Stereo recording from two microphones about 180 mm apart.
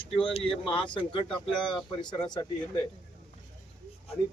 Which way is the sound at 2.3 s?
25° left (ahead or behind).